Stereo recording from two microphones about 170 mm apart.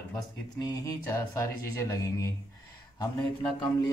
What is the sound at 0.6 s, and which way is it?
A man's voice, 20° left (ahead or behind).